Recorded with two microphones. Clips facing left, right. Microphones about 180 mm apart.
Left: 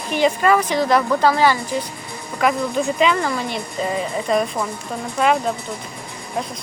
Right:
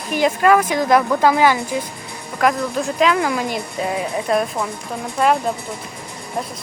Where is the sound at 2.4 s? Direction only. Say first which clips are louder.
Even; centre (ahead or behind).